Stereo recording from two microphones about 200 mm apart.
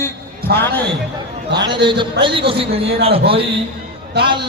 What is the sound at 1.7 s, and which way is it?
A man's voice, 25° right (ahead or behind).